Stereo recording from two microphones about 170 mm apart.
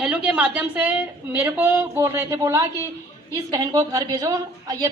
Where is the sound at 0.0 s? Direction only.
5° right (ahead or behind).